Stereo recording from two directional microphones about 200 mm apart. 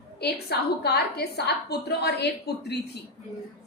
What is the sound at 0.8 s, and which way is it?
A woman's voice, 55° left (ahead or behind).